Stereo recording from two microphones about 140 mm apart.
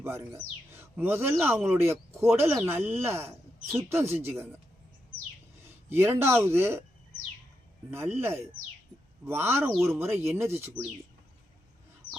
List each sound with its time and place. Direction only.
0.0 s speech: 15° right (ahead or behind)
5.6 s speech: 15° right (ahead or behind)
7.9 s speech: 15° right (ahead or behind)